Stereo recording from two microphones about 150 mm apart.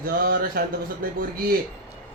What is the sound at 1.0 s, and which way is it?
Mantra, 75° right (ahead or behind).